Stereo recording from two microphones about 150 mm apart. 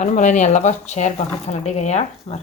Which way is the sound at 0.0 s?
55° left (ahead or behind).